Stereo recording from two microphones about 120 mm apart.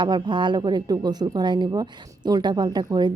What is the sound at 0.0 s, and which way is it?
A woman's voice, 40° right (ahead or behind).